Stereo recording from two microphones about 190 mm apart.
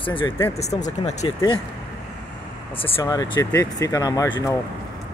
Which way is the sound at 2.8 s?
30° left (ahead or behind).